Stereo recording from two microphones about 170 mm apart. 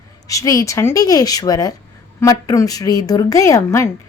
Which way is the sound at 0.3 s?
20° left (ahead or behind).